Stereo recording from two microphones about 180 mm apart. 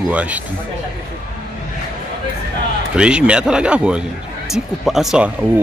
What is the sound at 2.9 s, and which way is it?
Speech, 5° right (ahead or behind).